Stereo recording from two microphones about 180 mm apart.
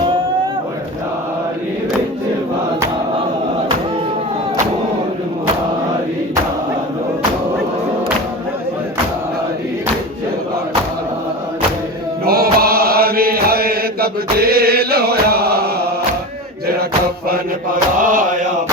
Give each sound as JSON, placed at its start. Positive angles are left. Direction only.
{"t": 12.2, "sound": "chant", "side_deg": -60}
{"t": 18.0, "sound": "chant", "side_deg": -50}